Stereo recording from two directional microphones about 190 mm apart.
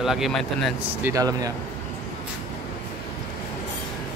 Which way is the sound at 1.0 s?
20° right (ahead or behind).